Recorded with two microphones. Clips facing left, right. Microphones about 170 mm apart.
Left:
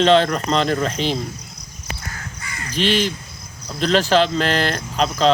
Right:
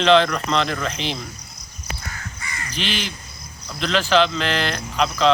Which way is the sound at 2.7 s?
40° left (ahead or behind).